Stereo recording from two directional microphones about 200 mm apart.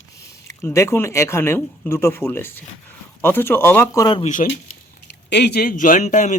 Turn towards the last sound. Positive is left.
turn(degrees=35)  # may be behind; listen again after turning